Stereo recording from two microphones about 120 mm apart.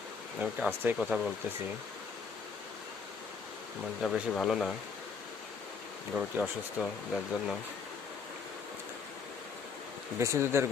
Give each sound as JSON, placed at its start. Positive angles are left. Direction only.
{"t": 0.3, "sound": "speech", "side_deg": -10}
{"t": 0.9, "sound": "speech", "side_deg": 0}
{"t": 4.0, "sound": "speech", "side_deg": 0}
{"t": 6.4, "sound": "speech", "side_deg": -5}
{"t": 10.2, "sound": "speech", "side_deg": -20}